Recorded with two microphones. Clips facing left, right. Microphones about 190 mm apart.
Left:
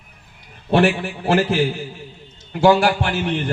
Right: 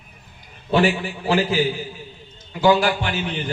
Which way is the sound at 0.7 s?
60° left (ahead or behind).